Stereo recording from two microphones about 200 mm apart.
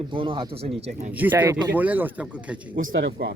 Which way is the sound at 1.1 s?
10° right (ahead or behind).